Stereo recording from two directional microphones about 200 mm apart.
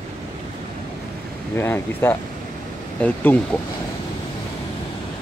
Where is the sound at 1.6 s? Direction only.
10° left (ahead or behind).